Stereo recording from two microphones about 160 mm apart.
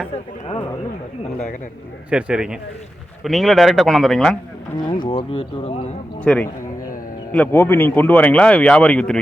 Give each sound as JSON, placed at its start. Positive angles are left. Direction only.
{"t": 2.0, "sound": "speech", "side_deg": -5}
{"t": 4.9, "sound": "speech", "side_deg": 30}
{"t": 6.2, "sound": "speech", "side_deg": 10}